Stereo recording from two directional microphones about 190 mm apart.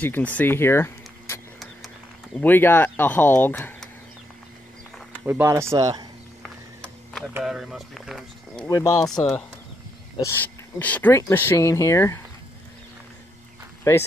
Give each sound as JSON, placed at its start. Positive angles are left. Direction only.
{"t": 0.0, "sound": "speech", "side_deg": 10}
{"t": 2.4, "sound": "speech", "side_deg": 10}
{"t": 5.2, "sound": "speech", "side_deg": -10}
{"t": 6.4, "sound": "a sound", "side_deg": 5}
{"t": 7.3, "sound": "speech", "side_deg": 0}
{"t": 8.6, "sound": "speech", "side_deg": 20}
{"t": 13.9, "sound": "speech", "side_deg": 15}